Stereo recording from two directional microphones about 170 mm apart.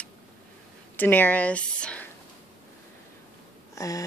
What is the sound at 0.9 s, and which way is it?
Speech, 10° left (ahead or behind).